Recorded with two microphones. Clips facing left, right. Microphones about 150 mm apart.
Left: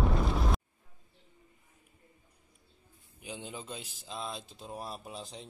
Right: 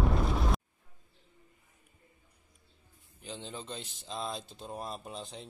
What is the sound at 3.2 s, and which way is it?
Speech, 10° left (ahead or behind).